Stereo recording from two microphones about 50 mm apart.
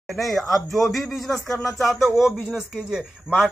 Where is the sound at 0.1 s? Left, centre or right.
Centre.